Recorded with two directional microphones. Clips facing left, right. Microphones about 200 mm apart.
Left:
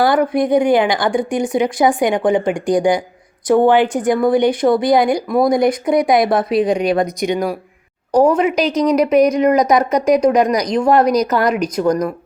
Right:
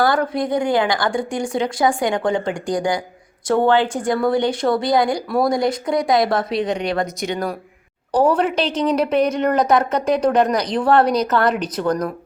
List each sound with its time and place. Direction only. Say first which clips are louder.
0.0 s a woman's voice: left 4 dB; 20° left (ahead or behind)
6.5 s speech: left 6 dB; 25° right (ahead or behind)
6.8 s speech: left 6 dB; 20° left (ahead or behind)
8.6 s speech: left 4 dB; 25° right (ahead or behind)
9.4 s speech: left 4 dB; 10° left (ahead or behind)
11.0 s speech: left 4 dB; 25° right (ahead or behind)
11.3 s speech: left 2 dB; 10° left (ahead or behind)